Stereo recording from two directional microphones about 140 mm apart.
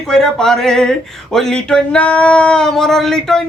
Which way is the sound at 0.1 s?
5° left (ahead or behind).